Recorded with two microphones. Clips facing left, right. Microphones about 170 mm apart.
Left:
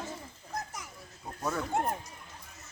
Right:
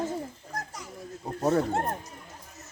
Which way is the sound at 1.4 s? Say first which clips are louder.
Right 9 dB; 35° right (ahead or behind).